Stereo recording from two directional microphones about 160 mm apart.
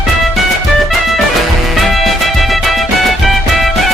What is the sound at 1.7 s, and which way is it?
Music, centre (ahead or behind).